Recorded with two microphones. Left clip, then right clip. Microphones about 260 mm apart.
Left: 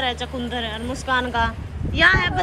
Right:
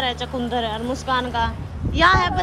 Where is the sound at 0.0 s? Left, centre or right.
Centre.